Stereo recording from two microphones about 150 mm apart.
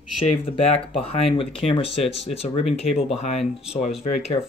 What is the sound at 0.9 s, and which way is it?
Speech, 40° left (ahead or behind).